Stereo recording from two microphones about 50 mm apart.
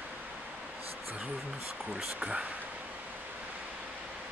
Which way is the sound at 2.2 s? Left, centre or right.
Right.